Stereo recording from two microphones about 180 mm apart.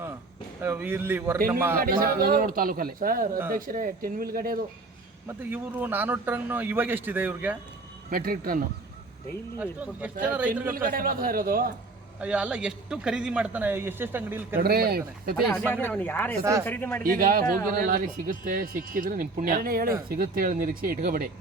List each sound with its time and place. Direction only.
0.6 s speech: 15° right (ahead or behind)
1.8 s speech: 55° right (ahead or behind)
5.4 s speech: 10° right (ahead or behind)
8.1 s speech: 55° right (ahead or behind)
9.6 s speech: 10° right (ahead or behind)
10.7 s speech: 50° right (ahead or behind)
12.2 s speech: 5° right (ahead or behind)
14.6 s speech: 60° right (ahead or behind)
15.4 s speech: 5° left (ahead or behind)
16.4 s speech: 15° right (ahead or behind)
16.6 s speech: 10° left (ahead or behind)
17.0 s speech: 50° right (ahead or behind)